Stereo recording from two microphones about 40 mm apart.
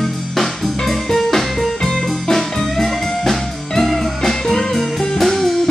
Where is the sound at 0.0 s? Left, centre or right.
Centre.